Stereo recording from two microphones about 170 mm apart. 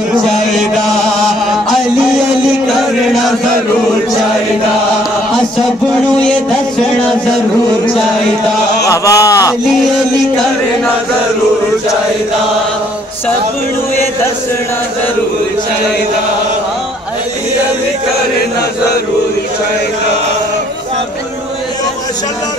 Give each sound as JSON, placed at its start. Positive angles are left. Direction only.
{"t": 8.8, "sound": "speech", "side_deg": 20}
{"t": 9.7, "sound": "music", "side_deg": 0}